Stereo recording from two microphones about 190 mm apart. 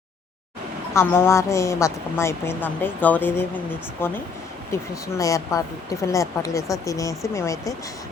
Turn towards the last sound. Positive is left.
turn(degrees=15)  # may be behind; listen again after turning